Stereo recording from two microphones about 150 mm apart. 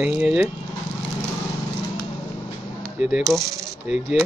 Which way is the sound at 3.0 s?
5° right (ahead or behind).